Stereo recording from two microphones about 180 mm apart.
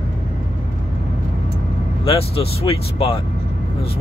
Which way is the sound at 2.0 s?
30° left (ahead or behind).